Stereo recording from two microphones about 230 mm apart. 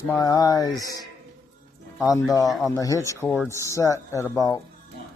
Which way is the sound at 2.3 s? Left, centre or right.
Centre.